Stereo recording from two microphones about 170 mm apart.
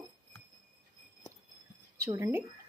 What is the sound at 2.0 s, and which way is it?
Speech, 15° right (ahead or behind).